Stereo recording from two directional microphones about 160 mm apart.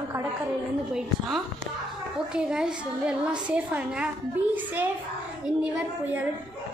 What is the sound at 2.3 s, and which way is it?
A woman's voice, 5° right (ahead or behind).